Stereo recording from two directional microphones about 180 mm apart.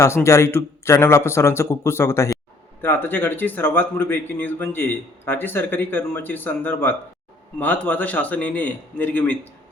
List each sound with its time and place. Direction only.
0.0 s speech: 15° left (ahead or behind)